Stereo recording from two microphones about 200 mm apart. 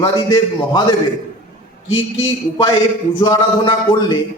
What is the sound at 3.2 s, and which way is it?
Speech, 20° left (ahead or behind).